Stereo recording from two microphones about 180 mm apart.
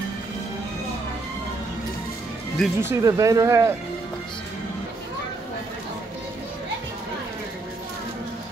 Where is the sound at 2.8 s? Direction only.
15° right (ahead or behind).